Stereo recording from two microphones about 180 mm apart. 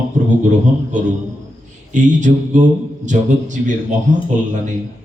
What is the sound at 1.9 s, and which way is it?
A man's voice, 45° right (ahead or behind).